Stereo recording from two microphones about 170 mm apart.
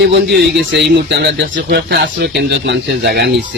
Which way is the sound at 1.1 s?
90° right.